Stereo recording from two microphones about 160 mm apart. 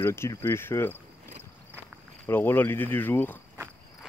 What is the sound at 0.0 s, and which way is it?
Speech, 15° left (ahead or behind).